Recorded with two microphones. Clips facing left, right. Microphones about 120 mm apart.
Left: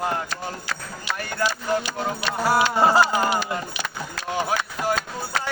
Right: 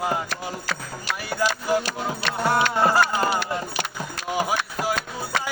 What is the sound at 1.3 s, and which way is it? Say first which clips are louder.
Music: right 2 dB; 5° right (ahead or behind).